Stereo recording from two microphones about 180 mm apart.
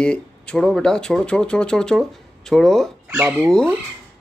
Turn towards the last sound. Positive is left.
turn(degrees=5)  # may be behind; listen again after turning